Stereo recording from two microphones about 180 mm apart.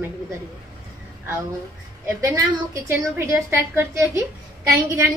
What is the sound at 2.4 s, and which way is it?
A woman's voice, 15° right (ahead or behind).